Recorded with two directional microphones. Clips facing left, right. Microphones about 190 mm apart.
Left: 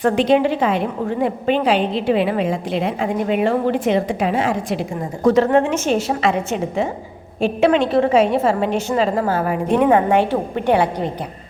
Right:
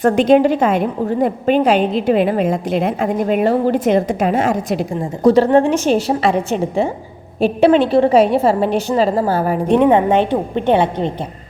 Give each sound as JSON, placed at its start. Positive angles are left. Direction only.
{"t": 0.0, "sound": "a woman's voice", "side_deg": -45}
{"t": 9.7, "sound": "a woman's voice", "side_deg": -20}